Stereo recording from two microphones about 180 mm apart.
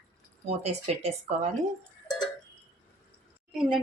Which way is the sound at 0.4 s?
35° right (ahead or behind).